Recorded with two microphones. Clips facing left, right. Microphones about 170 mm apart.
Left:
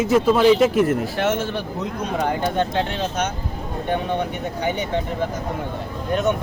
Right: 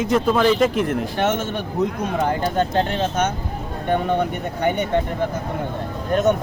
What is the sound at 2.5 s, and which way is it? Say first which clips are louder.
Speech: right 2 dB; 45° right (ahead or behind).